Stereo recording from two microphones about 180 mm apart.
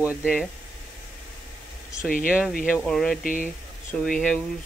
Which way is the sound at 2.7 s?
5° left (ahead or behind).